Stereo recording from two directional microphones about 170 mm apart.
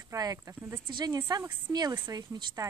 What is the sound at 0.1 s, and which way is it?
Speech, 20° right (ahead or behind).